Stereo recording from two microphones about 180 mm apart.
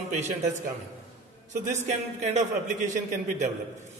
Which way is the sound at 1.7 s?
40° right (ahead or behind).